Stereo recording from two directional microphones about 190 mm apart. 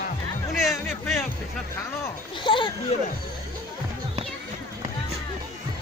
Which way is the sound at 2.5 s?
25° left (ahead or behind).